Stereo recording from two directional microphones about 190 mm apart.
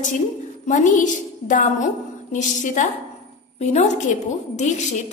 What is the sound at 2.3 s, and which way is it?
A woman's voice, 40° left (ahead or behind).